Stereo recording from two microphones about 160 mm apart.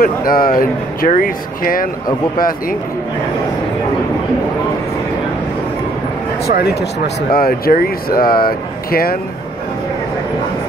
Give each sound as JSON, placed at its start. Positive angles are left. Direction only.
{"t": 0.0, "sound": "speech", "side_deg": 65}
{"t": 6.4, "sound": "speech", "side_deg": 90}
{"t": 7.3, "sound": "speech", "side_deg": 65}